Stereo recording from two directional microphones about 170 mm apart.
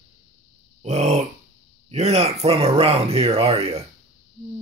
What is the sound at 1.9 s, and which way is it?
Speech, 40° right (ahead or behind).